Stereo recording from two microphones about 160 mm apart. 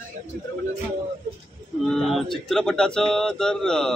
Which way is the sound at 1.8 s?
Centre (ahead or behind).